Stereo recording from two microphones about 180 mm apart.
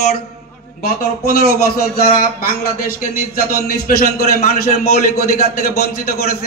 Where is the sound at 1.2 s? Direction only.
55° left (ahead or behind).